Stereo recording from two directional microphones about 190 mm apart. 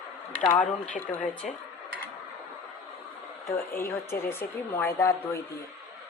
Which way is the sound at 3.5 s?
15° left (ahead or behind).